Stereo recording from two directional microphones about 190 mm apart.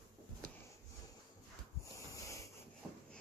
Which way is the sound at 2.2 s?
15° left (ahead or behind).